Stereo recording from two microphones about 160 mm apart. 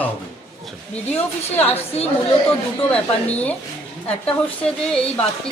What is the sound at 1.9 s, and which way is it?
Speech, 40° left (ahead or behind).